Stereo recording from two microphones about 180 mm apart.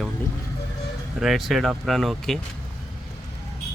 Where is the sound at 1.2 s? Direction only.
Centre (ahead or behind).